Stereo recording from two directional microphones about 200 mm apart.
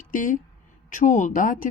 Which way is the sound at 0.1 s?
40° left (ahead or behind).